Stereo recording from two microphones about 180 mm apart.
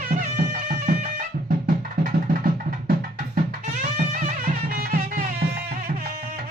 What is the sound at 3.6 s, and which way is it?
Music, 40° right (ahead or behind).